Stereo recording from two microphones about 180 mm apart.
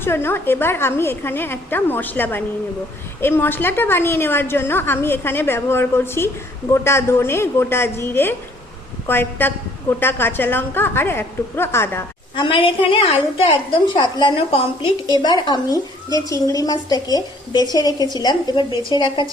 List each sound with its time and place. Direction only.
0.0 s a woman's voice: 10° left (ahead or behind)
12.4 s a woman's voice: 30° left (ahead or behind)